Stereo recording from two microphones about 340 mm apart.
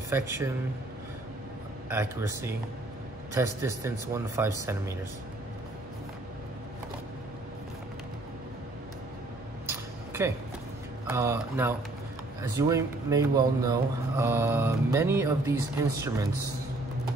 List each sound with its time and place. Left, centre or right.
0.1 s speech: centre
1.9 s speech: centre
9.7 s a sound: centre
11.1 s speech: centre